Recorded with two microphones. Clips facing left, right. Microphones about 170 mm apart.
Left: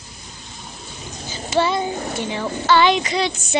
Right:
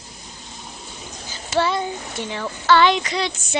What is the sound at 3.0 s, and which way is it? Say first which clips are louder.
Child singing: left 3 dB; 15° left (ahead or behind).